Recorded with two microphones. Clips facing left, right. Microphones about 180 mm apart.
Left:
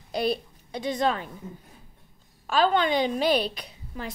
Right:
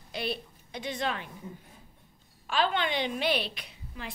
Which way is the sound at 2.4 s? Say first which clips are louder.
Left 6 dB; 40° left (ahead or behind).